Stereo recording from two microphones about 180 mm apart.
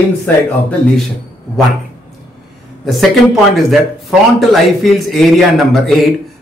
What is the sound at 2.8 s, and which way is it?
A man's voice, centre (ahead or behind).